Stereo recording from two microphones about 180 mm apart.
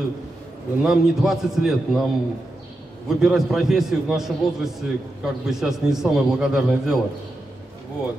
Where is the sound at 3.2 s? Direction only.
5° right (ahead or behind).